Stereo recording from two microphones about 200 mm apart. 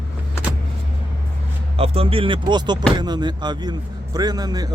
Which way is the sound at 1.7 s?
30° right (ahead or behind).